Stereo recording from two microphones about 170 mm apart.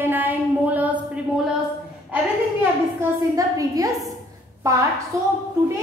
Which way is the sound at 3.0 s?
20° right (ahead or behind).